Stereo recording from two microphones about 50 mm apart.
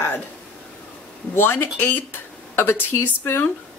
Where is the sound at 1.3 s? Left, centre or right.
Left.